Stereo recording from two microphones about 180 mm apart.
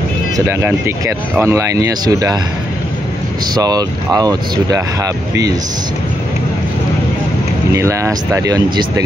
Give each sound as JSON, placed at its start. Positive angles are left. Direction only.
{"t": 0.5, "sound": "speech", "side_deg": -15}
{"t": 3.5, "sound": "speech", "side_deg": -20}
{"t": 7.7, "sound": "speech", "side_deg": -15}